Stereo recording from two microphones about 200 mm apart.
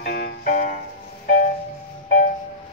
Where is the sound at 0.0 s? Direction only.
50° left (ahead or behind).